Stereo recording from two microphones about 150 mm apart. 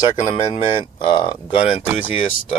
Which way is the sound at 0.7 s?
35° left (ahead or behind).